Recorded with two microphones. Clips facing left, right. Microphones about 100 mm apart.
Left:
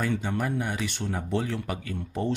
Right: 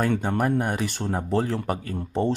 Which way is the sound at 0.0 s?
50° right (ahead or behind).